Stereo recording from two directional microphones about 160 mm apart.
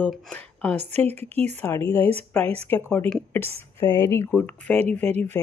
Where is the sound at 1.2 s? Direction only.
40° right (ahead or behind).